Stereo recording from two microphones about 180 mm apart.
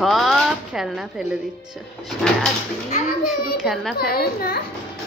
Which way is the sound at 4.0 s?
55° left (ahead or behind).